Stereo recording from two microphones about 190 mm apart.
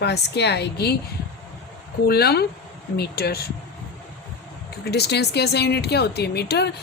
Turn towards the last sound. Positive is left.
turn(degrees=60)  # may be behind; listen again after turning